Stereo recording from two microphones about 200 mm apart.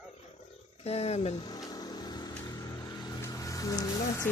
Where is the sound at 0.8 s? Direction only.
30° left (ahead or behind).